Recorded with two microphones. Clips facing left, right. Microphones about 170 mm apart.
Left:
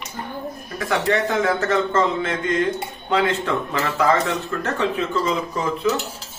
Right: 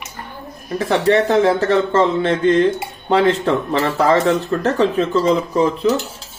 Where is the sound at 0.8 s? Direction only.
30° right (ahead or behind).